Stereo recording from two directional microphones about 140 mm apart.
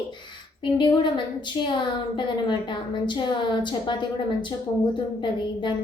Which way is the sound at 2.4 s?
35° left (ahead or behind).